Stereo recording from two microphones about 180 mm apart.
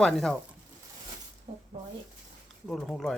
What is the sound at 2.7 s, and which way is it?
Speech, centre (ahead or behind).